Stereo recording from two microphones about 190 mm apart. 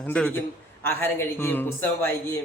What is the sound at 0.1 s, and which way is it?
A woman's voice, 5° left (ahead or behind).